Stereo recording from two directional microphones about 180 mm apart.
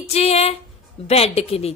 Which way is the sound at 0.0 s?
35° left (ahead or behind).